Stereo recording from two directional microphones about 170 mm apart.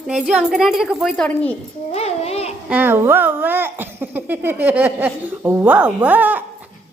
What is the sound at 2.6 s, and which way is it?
Speech, 10° right (ahead or behind).